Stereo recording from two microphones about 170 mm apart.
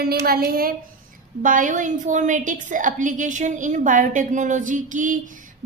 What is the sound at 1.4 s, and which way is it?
A woman's voice, 50° right (ahead or behind).